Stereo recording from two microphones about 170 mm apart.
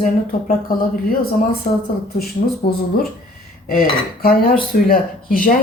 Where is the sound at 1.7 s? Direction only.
40° left (ahead or behind).